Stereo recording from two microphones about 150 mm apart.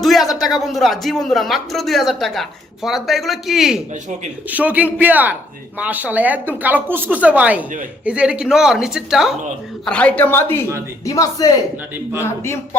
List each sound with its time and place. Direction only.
0.0 s a sound: centre (ahead or behind)
0.4 s speech: centre (ahead or behind)
9.8 s a man's voice: 10° left (ahead or behind)